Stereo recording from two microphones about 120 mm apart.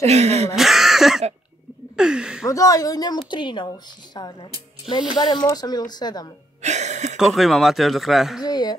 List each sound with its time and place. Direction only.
0.0 s a sound: 60° right (ahead or behind)
0.6 s speech: centre (ahead or behind)
2.4 s a woman's voice: 30° left (ahead or behind)
6.6 s speech: 75° right (ahead or behind)
7.2 s speech: centre (ahead or behind)
8.4 s a woman's voice: 35° left (ahead or behind)